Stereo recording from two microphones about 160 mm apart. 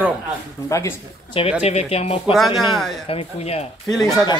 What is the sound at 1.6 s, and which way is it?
Speech, 40° left (ahead or behind).